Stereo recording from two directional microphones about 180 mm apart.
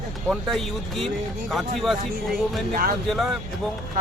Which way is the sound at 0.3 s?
Centre (ahead or behind).